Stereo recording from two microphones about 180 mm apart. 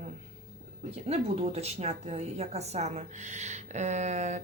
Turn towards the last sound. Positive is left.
turn(degrees=-40)  # may be behind; listen again after turning